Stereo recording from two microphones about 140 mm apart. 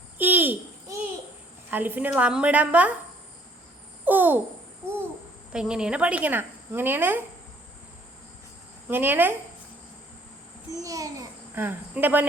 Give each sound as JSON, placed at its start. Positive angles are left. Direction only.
{"t": 0.2, "sound": "babbling", "side_deg": -15}
{"t": 1.7, "sound": "a woman's voice", "side_deg": -15}
{"t": 4.0, "sound": "babbling", "side_deg": -15}
{"t": 5.5, "sound": "a woman's voice", "side_deg": -5}
{"t": 8.9, "sound": "a woman's voice", "side_deg": -15}
{"t": 10.7, "sound": "a child's voice", "side_deg": -25}
{"t": 11.6, "sound": "a woman's voice", "side_deg": -15}